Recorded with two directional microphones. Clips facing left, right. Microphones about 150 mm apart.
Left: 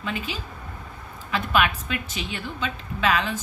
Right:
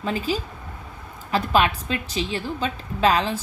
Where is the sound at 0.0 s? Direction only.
35° right (ahead or behind).